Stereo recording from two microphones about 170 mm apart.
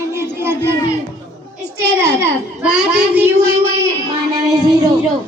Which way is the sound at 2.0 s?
15° right (ahead or behind).